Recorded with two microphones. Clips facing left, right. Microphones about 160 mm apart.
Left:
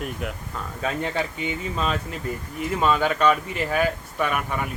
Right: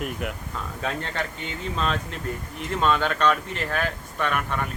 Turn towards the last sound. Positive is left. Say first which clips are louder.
# left 1 dB
turn(degrees=10)  # may be behind; listen again after turning